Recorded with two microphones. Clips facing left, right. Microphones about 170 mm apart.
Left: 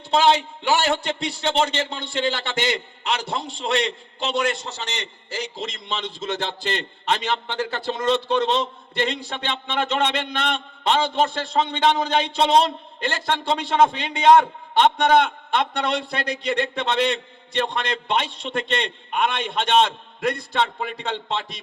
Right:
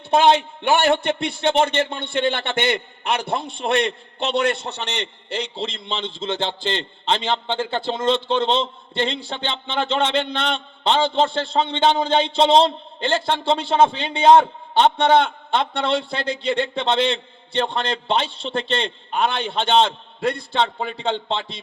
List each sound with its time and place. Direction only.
0.1 s a man's voice: 55° right (ahead or behind)
5.4 s a man's voice: 30° right (ahead or behind)